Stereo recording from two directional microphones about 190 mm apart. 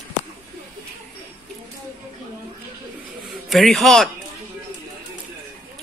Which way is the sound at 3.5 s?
Centre (ahead or behind).